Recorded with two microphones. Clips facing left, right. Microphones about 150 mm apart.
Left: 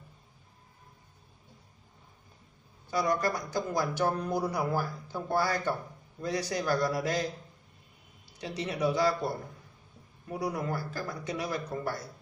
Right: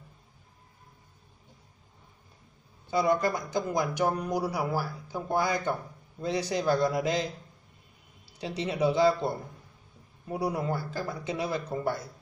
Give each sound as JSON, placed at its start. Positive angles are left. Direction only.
{"t": 2.9, "sound": "speech", "side_deg": -25}
{"t": 8.4, "sound": "speech", "side_deg": -30}
{"t": 10.3, "sound": "speech", "side_deg": -30}